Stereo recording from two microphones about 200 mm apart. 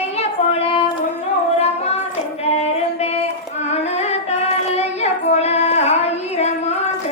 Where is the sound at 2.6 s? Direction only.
30° left (ahead or behind).